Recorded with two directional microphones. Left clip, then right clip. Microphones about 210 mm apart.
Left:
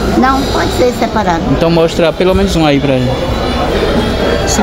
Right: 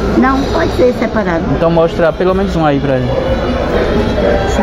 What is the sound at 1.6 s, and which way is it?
Speech, 25° left (ahead or behind).